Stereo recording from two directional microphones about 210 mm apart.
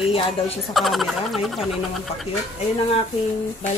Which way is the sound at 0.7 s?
Centre (ahead or behind).